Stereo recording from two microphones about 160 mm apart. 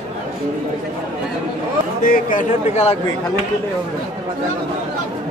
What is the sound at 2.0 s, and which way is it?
Speech, 60° left (ahead or behind).